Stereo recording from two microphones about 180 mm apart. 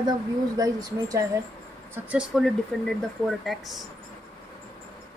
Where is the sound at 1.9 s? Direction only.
5° right (ahead or behind).